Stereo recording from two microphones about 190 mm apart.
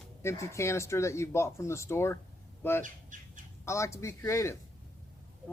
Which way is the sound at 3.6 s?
15° left (ahead or behind).